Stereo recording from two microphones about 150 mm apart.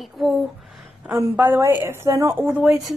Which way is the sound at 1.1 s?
15° right (ahead or behind).